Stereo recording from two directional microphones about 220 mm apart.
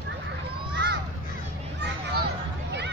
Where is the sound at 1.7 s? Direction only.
50° right (ahead or behind).